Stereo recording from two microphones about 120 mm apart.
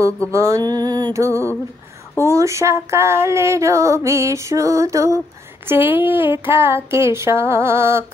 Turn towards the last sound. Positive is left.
turn(degrees=-20)  # may be behind; listen again after turning